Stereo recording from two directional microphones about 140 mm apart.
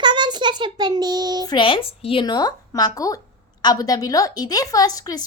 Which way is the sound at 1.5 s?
40° left (ahead or behind).